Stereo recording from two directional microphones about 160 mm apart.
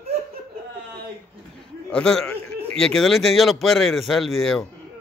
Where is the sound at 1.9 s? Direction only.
5° left (ahead or behind).